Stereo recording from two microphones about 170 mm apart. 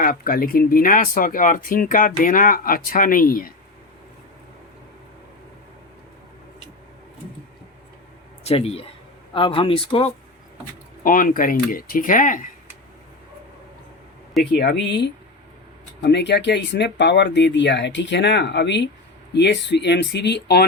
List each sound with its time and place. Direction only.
0.0 s speech: 55° left (ahead or behind)
8.4 s speech: 35° left (ahead or behind)
11.0 s speech: 55° left (ahead or behind)
14.5 s speech: 75° left (ahead or behind)